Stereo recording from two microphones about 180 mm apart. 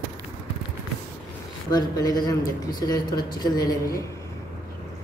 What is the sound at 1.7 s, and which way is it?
Speech, 20° left (ahead or behind).